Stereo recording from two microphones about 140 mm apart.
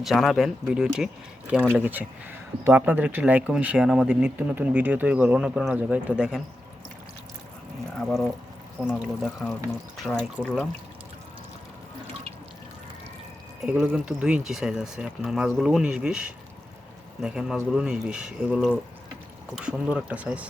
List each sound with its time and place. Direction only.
0.0 s speech: centre (ahead or behind)
7.9 s speech: centre (ahead or behind)
13.6 s speech: 5° right (ahead or behind)